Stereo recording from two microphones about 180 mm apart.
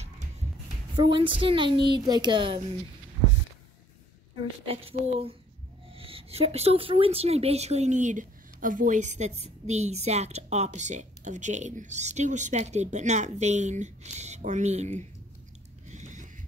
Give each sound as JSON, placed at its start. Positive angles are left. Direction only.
{"t": 0.9, "sound": "a woman's voice", "side_deg": -25}
{"t": 4.4, "sound": "a woman's voice", "side_deg": -30}
{"t": 15.9, "sound": "a sound", "side_deg": -40}